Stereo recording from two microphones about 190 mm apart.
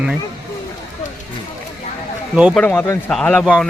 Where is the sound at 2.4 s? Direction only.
5° right (ahead or behind).